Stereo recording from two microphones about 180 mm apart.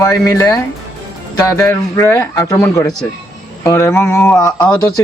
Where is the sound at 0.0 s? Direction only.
20° left (ahead or behind).